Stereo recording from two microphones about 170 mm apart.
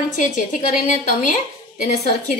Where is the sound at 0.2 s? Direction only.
50° left (ahead or behind).